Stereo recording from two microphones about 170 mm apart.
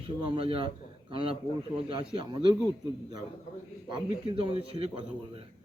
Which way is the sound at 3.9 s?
30° right (ahead or behind).